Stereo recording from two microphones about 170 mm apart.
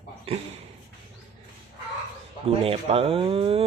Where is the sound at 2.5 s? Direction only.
35° right (ahead or behind).